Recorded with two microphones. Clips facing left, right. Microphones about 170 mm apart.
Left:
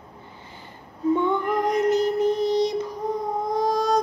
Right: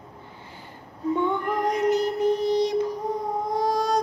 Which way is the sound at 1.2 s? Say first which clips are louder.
Left 2 dB; 10° right (ahead or behind).